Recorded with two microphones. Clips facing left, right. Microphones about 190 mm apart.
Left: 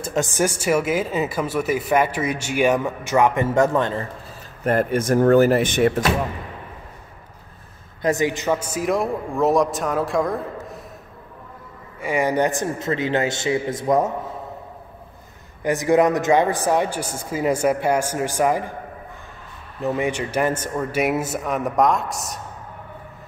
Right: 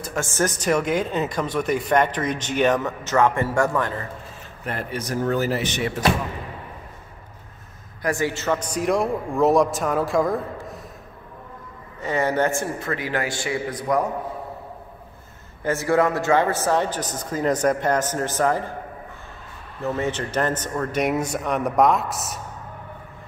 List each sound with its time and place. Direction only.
0.0 s speech: 20° left (ahead or behind)
4.6 s speech: 50° left (ahead or behind)
8.0 s a man's voice: 20° left (ahead or behind); by 10.8 s centre (ahead or behind)
12.0 s a man's voice: 10° left (ahead or behind)
15.6 s speech: 15° left (ahead or behind)
19.8 s speech: 15° left (ahead or behind); by 22.4 s centre (ahead or behind)